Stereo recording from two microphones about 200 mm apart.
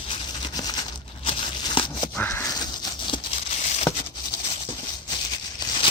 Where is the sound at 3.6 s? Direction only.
35° left (ahead or behind).